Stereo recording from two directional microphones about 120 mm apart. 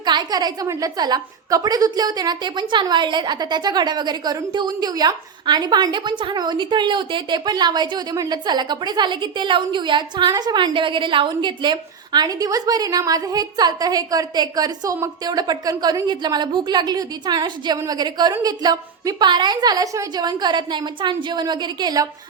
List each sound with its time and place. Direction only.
0.0 s a woman's voice: 35° right (ahead or behind)